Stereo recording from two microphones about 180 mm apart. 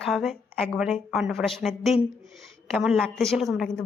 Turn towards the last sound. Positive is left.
turn(degrees=0)  # may be behind; listen again after turning